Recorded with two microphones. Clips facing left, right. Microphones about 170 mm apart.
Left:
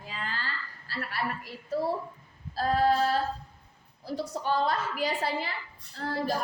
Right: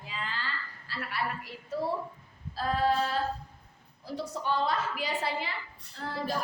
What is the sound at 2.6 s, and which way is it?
Speech, 40° left (ahead or behind).